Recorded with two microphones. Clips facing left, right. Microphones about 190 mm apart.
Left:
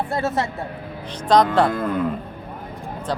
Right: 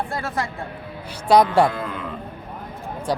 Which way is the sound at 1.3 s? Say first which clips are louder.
Right 1 dB; 10° right (ahead or behind).